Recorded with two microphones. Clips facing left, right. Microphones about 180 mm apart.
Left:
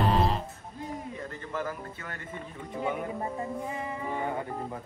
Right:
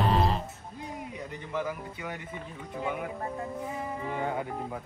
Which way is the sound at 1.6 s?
10° right (ahead or behind).